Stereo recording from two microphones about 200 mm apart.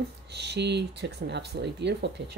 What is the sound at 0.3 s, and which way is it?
Speech, 60° right (ahead or behind).